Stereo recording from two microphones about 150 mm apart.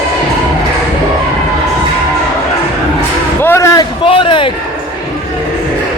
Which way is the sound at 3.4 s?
15° left (ahead or behind).